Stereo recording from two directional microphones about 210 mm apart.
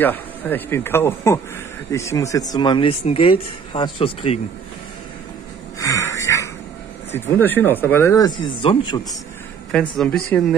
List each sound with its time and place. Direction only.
0.0 s speech: 10° left (ahead or behind); by 4.4 s 25° left (ahead or behind)
5.8 s a sound: 15° left (ahead or behind)
7.1 s speech: 10° left (ahead or behind)
8.5 s speech: 20° left (ahead or behind)
9.7 s speech: 5° left (ahead or behind)